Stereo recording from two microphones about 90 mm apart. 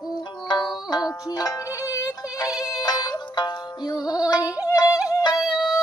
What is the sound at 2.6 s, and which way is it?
Music, 45° left (ahead or behind).